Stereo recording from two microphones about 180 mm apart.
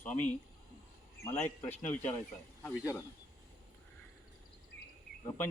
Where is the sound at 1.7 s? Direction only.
10° left (ahead or behind).